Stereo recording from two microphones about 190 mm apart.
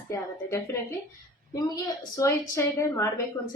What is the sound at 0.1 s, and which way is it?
A woman's voice, 15° left (ahead or behind).